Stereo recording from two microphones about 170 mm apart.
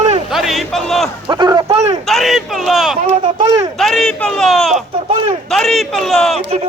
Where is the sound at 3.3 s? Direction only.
25° right (ahead or behind).